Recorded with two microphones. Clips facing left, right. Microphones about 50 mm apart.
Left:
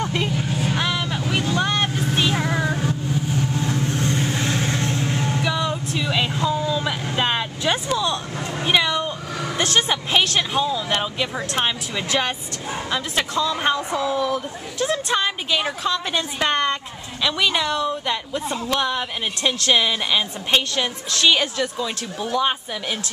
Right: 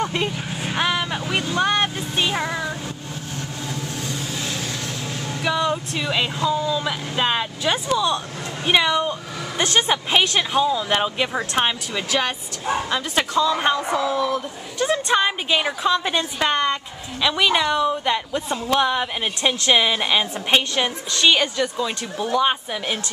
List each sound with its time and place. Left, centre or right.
0.0 s speech: centre
0.6 s vehicle: centre
2.1 s music: centre
2.5 s child singing: centre
3.9 s vehicle: left
5.4 s a sound: centre
6.3 s a woman's voice: centre
12.1 s a woman's voice: centre